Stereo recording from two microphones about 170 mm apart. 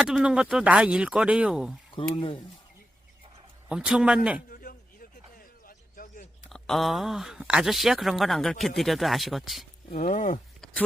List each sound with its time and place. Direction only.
0.0 s speech: 5° right (ahead or behind)
2.0 s speech: 30° left (ahead or behind)
3.7 s speech: 5° right (ahead or behind)
4.4 s a sound: 55° left (ahead or behind)
6.5 s speech: centre (ahead or behind)
9.9 s speech: 45° left (ahead or behind)